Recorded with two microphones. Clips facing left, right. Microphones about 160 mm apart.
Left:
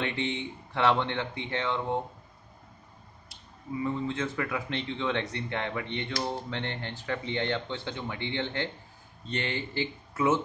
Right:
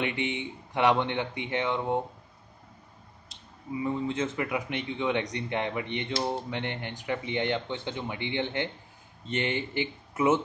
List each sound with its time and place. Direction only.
0.0 s speech: 15° right (ahead or behind)
3.3 s speech: 15° right (ahead or behind)